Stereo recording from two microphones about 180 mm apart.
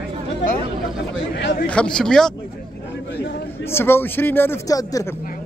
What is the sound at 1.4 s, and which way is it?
Speech, 70° left (ahead or behind).